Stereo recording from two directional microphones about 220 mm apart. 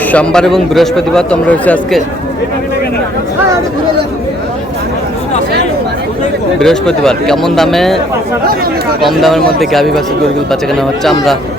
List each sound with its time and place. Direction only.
0.1 s speech: 5° left (ahead or behind)
6.6 s speech: 5° left (ahead or behind)
9.0 s speech: centre (ahead or behind)